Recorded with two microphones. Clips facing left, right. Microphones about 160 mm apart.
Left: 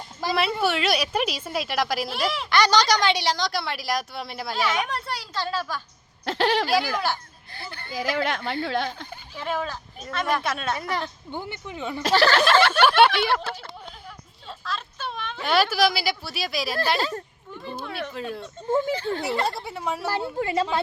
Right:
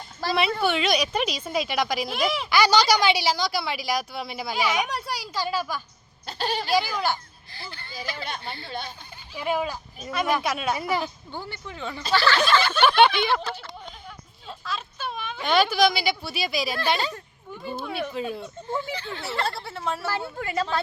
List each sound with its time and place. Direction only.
0.5 s speech: 5° left (ahead or behind)
6.2 s speech: 90° left
6.7 s speech: centre (ahead or behind)
7.5 s speech: 55° left (ahead or behind); by 9.0 s 90° left
9.3 s speech: 10° right (ahead or behind)
11.3 s speech: 20° left (ahead or behind)
12.1 s speech: 45° left (ahead or behind)
13.0 s speech: 5° left (ahead or behind)
14.6 s speech: centre (ahead or behind)
18.7 s speech: 45° left (ahead or behind)
19.3 s speech: 15° left (ahead or behind)
20.3 s a woman's voice: 25° left (ahead or behind)